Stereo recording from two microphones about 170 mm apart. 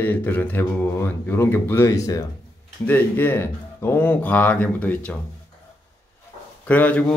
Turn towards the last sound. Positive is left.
turn(degrees=10)  # may be behind; listen again after turning